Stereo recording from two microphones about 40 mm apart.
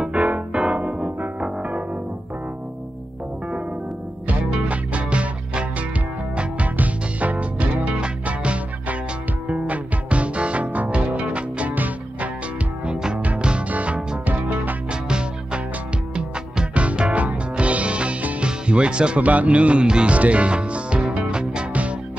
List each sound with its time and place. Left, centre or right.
0.1 s music: right
4.6 s music: right
11.7 s music: right
12.8 s music: right
13.7 s music: right
14.9 s music: right
19.2 s speech: right
20.2 s music: right